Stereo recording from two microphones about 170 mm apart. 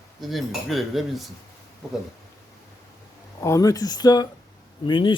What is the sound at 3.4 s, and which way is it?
Speech, 20° left (ahead or behind).